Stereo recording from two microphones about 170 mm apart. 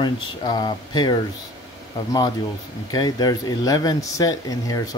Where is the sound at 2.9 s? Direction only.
25° left (ahead or behind).